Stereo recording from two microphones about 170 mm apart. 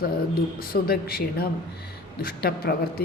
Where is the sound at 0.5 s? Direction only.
60° left (ahead or behind).